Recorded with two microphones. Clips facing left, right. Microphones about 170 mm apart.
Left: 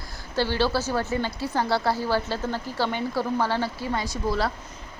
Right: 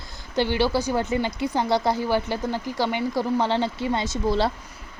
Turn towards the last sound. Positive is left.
turn(degrees=-25)  # may be behind; listen again after turning